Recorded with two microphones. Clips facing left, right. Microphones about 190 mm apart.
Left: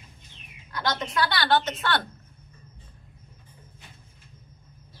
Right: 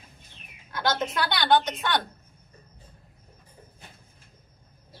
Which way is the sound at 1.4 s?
15° right (ahead or behind).